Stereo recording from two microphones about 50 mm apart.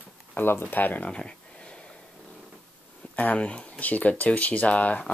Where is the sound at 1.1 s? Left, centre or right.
Left.